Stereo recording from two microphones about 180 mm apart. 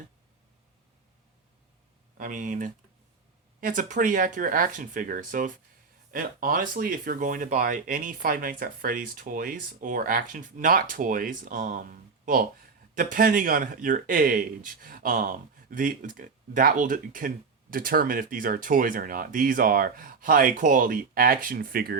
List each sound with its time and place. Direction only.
2.1 s speech: 45° right (ahead or behind)